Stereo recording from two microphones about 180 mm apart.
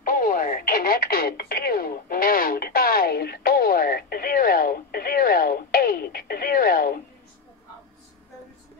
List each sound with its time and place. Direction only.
0.0 s radio: 50° left (ahead or behind)